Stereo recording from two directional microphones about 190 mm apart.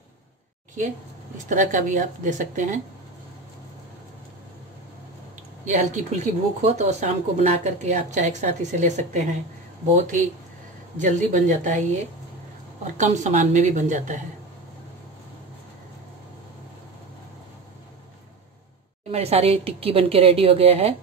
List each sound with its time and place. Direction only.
1.5 s speech: 40° right (ahead or behind)
5.7 s speech: 40° right (ahead or behind)
19.0 s speech: 30° right (ahead or behind)